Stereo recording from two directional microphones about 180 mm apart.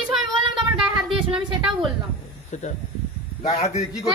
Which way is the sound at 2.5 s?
40° left (ahead or behind).